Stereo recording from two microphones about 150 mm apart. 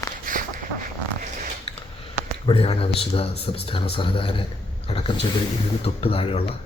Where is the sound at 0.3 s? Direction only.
65° right (ahead or behind).